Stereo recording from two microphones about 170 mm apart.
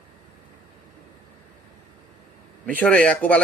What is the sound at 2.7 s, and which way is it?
Speech, 10° left (ahead or behind).